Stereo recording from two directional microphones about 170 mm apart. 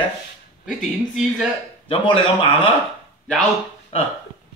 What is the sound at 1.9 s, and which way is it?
Speech, 30° left (ahead or behind).